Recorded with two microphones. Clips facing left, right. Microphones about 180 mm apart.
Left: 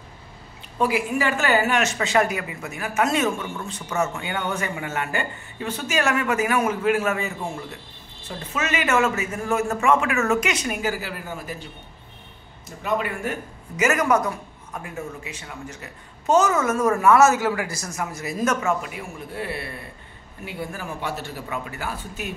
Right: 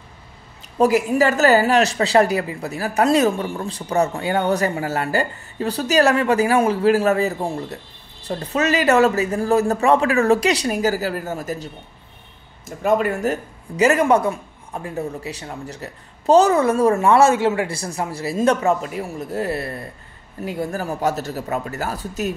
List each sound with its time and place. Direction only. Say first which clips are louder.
0.7 s a woman's voice: right 7 dB; 40° right (ahead or behind)